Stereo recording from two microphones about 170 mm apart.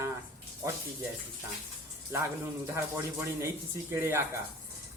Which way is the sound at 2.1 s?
15° right (ahead or behind).